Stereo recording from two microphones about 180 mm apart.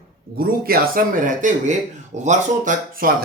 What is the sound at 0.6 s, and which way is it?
Speech, 50° right (ahead or behind).